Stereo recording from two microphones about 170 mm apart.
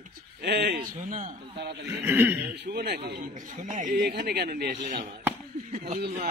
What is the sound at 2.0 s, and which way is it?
Speech, 10° right (ahead or behind).